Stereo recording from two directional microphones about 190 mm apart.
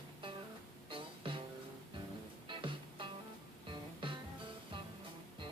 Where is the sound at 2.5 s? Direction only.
25° right (ahead or behind).